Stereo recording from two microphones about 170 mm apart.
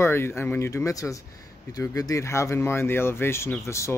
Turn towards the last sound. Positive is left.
turn(degrees=15)  # may be behind; listen again after turning